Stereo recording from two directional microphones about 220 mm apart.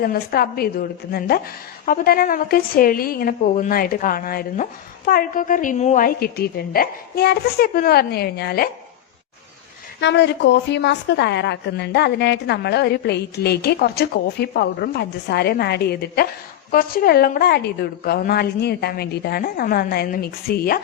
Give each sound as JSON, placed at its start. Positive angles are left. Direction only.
{"t": 0.0, "sound": "a woman's voice", "side_deg": 40}
{"t": 10.0, "sound": "a woman's voice", "side_deg": 50}